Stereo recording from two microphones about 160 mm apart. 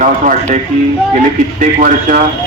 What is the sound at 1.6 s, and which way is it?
Speech, 60° right (ahead or behind).